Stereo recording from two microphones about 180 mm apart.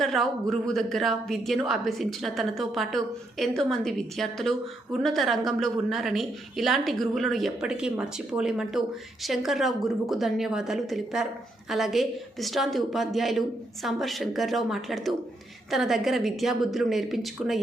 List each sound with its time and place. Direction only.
0.0 s speech: centre (ahead or behind)